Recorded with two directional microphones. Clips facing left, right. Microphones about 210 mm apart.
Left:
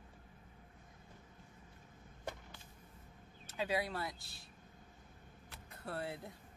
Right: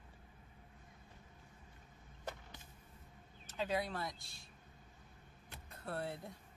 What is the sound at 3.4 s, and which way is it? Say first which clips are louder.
Speech: left 1 dB; 10° left (ahead or behind).